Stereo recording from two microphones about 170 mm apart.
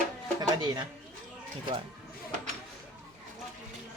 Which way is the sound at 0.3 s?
25° right (ahead or behind).